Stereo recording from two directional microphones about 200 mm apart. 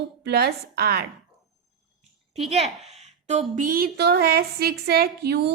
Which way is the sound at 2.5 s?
30° right (ahead or behind).